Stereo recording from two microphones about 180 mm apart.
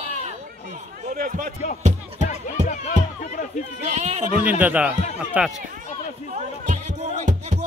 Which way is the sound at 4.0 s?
40° right (ahead or behind).